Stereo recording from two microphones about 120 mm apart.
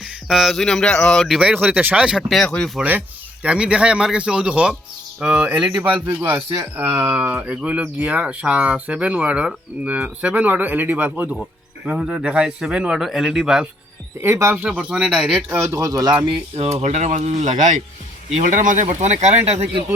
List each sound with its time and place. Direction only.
0.0 s a man's voice: 5° right (ahead or behind)
1.5 s speech: 15° right (ahead or behind)
2.4 s a man's voice: 5° left (ahead or behind)
2.7 s speech: 10° right (ahead or behind)
5.9 s a man's voice: 15° right (ahead or behind)
14.2 s speech: 20° right (ahead or behind)
15.5 s speech: 25° right (ahead or behind)
16.6 s speech: 65° right (ahead or behind); by 19.1 s 85° right
19.2 s speech: 65° right (ahead or behind)